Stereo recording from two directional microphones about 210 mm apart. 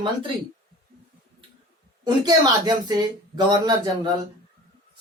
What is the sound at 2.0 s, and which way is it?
Speech, 20° right (ahead or behind).